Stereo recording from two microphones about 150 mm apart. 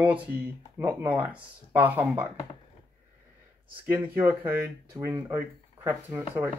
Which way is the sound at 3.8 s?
15° right (ahead or behind).